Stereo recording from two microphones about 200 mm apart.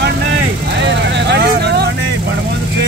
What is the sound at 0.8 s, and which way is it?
Vehicle, 60° right (ahead or behind).